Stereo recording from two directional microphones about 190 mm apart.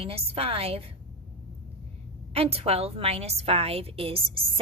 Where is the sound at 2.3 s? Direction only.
30° right (ahead or behind).